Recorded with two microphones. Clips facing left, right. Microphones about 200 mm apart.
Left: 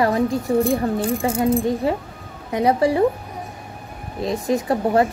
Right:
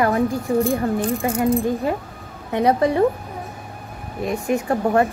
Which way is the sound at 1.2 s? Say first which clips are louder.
Left 1 dB; 25° left (ahead or behind).